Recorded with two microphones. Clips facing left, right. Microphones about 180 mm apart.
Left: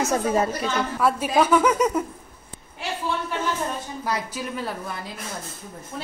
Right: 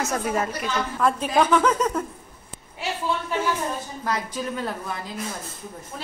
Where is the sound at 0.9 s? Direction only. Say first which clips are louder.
Even; 5° left (ahead or behind).